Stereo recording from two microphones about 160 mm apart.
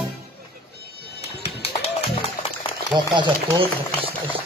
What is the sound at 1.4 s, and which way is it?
Music, 35° left (ahead or behind).